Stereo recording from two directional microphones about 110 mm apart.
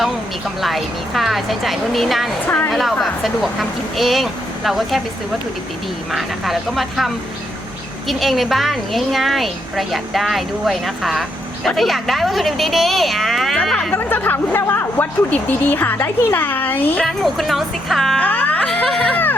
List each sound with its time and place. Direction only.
0.6 s a woman's voice: centre (ahead or behind)
6.1 s a woman's voice: centre (ahead or behind)
13.9 s speech: 20° left (ahead or behind)
17.0 s a woman's voice: centre (ahead or behind)
18.2 s music: 15° left (ahead or behind)
18.6 s a sound: centre (ahead or behind)